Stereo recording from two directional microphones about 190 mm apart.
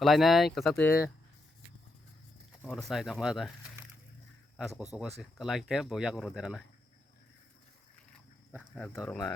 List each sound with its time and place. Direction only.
0.0 s speech: centre (ahead or behind)
2.6 s speech: 5° left (ahead or behind)
4.5 s speech: centre (ahead or behind)
9.0 s speech: 20° left (ahead or behind)